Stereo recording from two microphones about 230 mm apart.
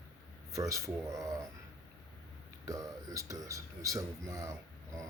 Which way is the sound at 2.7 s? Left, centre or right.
Centre.